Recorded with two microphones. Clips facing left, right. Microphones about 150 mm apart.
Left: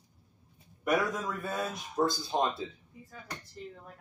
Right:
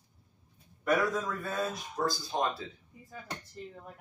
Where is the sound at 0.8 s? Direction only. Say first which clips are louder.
Right 1 dB; 10° left (ahead or behind).